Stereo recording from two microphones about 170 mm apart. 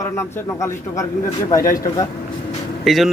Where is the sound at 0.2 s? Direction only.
15° left (ahead or behind).